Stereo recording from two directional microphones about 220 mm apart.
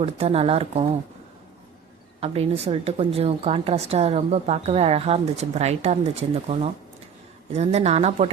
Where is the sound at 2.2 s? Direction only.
25° right (ahead or behind).